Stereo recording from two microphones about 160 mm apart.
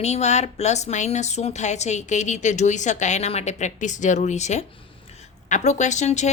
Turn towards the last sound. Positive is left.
turn(degrees=45)  # may be behind; listen again after turning